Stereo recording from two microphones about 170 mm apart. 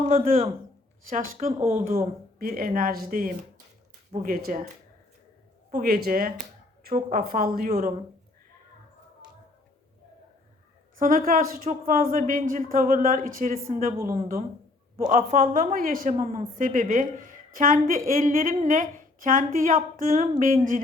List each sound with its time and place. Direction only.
0.1 s a woman's voice: 55° right (ahead or behind)
1.9 s a woman's voice: 60° right (ahead or behind)
5.7 s speech: 60° right (ahead or behind)
10.9 s speech: 55° right (ahead or behind)
14.9 s a woman's voice: 45° right (ahead or behind)